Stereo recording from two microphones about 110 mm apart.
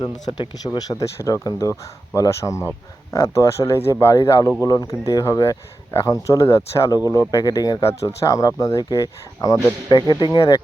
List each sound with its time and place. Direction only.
0.0 s speech: 40° left (ahead or behind)